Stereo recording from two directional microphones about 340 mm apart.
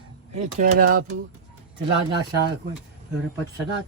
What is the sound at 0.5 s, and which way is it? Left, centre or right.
Speech, right.